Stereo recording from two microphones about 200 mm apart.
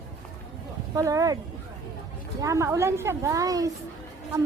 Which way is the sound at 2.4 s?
15° right (ahead or behind).